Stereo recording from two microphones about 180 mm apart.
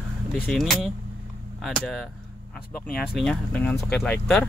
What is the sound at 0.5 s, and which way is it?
Speech, centre (ahead or behind).